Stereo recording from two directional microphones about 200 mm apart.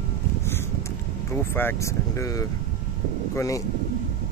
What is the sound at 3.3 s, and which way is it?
Speech, 15° left (ahead or behind).